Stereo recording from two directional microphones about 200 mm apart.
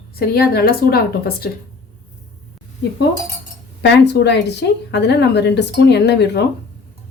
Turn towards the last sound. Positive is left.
turn(degrees=55)  # may be behind; listen again after turning